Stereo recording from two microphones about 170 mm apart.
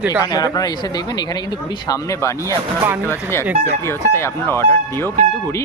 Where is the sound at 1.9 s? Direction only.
15° left (ahead or behind).